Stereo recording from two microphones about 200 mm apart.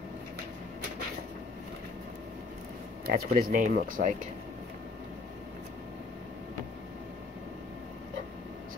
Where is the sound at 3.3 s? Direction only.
40° right (ahead or behind).